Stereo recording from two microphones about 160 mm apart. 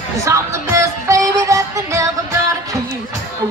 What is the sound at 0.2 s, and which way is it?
Music, 20° right (ahead or behind).